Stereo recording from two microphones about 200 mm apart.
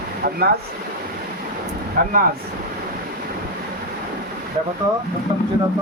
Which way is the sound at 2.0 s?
45° right (ahead or behind).